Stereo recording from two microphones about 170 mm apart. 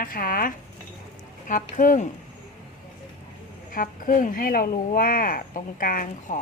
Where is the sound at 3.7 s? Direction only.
55° left (ahead or behind).